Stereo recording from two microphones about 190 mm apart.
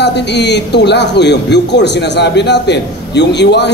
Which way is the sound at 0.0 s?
65° left (ahead or behind).